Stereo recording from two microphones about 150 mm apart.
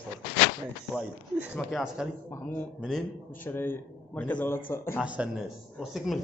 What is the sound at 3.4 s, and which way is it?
A man's voice, 15° left (ahead or behind).